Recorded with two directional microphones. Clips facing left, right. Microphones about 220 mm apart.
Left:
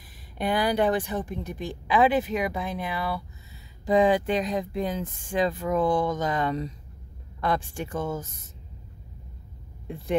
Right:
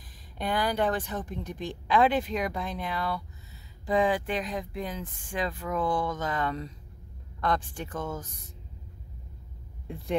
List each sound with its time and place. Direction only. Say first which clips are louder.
0.4 s speech: left 4 dB; 10° left (ahead or behind)
3.8 s speech: left 5 dB; 20° left (ahead or behind)